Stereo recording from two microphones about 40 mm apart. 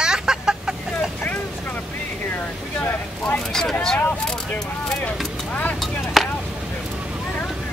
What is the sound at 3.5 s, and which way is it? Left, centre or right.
Speech, centre.